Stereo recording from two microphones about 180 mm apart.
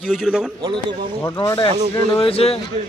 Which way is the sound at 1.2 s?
20° left (ahead or behind).